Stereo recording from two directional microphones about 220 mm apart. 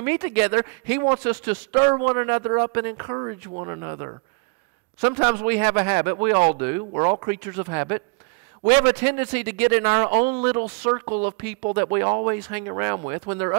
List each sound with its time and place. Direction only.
0.0 s speech: 15° right (ahead or behind)